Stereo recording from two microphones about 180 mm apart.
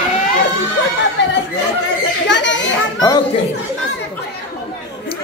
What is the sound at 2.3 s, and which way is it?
Children playing, 90° left.